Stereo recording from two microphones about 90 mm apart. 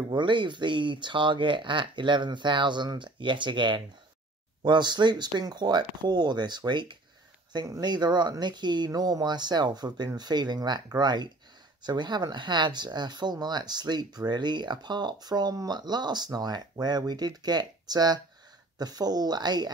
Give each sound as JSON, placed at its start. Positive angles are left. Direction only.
{"t": 0.1, "sound": "speech", "side_deg": -60}